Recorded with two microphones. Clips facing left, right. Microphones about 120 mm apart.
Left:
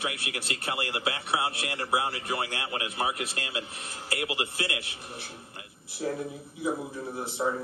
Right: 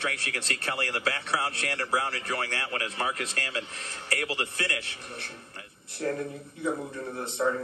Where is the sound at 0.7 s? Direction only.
25° left (ahead or behind).